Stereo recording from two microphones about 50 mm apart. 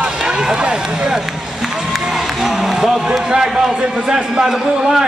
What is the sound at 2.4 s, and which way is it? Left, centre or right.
A man's voice, centre.